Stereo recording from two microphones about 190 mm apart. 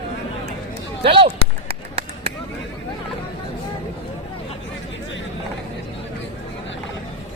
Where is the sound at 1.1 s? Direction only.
30° right (ahead or behind).